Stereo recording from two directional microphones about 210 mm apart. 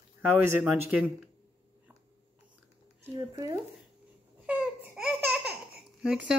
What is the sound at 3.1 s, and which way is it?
Speech, 15° right (ahead or behind).